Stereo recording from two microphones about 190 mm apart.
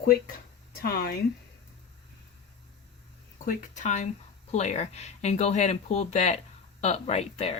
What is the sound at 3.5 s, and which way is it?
Speech, 40° left (ahead or behind).